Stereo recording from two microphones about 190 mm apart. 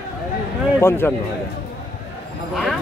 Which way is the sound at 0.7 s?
15° left (ahead or behind).